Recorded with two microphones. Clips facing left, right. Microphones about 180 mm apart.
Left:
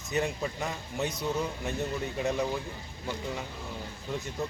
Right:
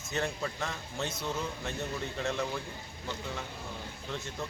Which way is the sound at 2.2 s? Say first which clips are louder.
Left 4 dB; 10° left (ahead or behind).